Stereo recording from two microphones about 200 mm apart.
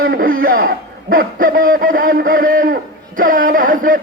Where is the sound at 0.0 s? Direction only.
45° right (ahead or behind).